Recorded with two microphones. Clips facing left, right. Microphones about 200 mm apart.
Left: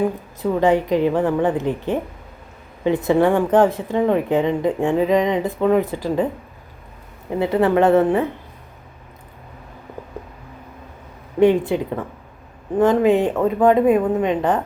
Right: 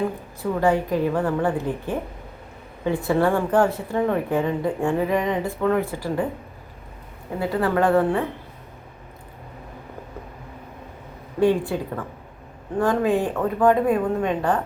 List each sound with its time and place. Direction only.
0.6 s a woman's voice: 20° left (ahead or behind)
7.3 s a woman's voice: 20° left (ahead or behind)
11.3 s a woman's voice: 20° left (ahead or behind)
12.8 s a woman's voice: 20° left (ahead or behind)